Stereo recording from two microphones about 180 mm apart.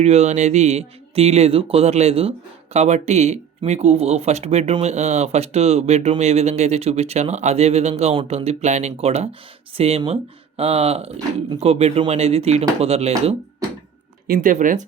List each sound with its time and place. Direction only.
0.0 s speech: 40° right (ahead or behind)
14.3 s speech: 50° right (ahead or behind)